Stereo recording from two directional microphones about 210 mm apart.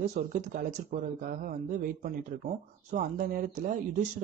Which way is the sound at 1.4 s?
40° right (ahead or behind).